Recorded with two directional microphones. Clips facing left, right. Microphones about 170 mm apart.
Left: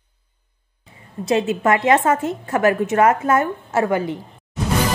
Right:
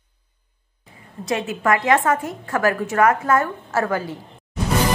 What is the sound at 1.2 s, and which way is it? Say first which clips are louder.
A woman's voice: left 4 dB; 25° left (ahead or behind).